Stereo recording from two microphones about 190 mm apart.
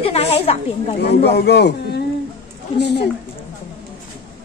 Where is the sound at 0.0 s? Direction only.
30° left (ahead or behind).